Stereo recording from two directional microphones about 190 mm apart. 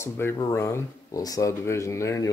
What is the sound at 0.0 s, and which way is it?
Speech, 15° left (ahead or behind).